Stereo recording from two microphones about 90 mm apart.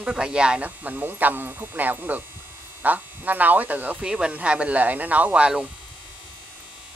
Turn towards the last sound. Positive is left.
turn(degrees=-10)  # may be behind; listen again after turning